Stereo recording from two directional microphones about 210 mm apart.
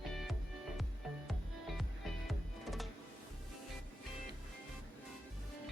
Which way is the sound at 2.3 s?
Centre (ahead or behind).